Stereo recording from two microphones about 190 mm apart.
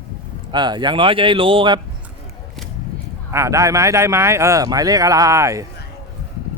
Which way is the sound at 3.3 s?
15° right (ahead or behind).